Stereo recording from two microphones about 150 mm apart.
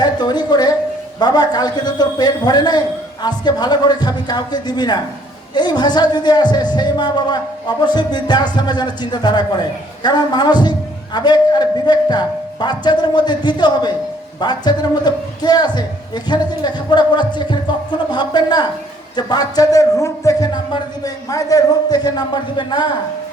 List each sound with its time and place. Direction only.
0.0 s a man's voice: 30° left (ahead or behind)